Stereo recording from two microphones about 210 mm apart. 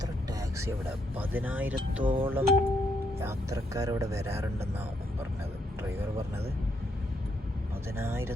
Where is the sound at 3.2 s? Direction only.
15° right (ahead or behind).